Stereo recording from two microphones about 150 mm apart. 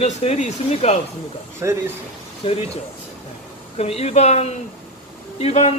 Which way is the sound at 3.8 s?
45° left (ahead or behind).